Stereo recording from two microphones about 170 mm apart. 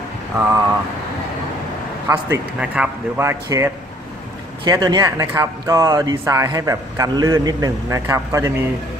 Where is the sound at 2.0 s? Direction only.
20° right (ahead or behind).